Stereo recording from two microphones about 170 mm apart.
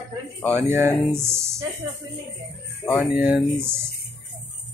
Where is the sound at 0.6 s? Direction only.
15° right (ahead or behind).